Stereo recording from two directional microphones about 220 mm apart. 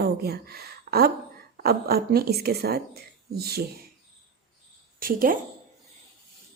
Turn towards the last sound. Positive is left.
turn(degrees=-40)  # may be behind; listen again after turning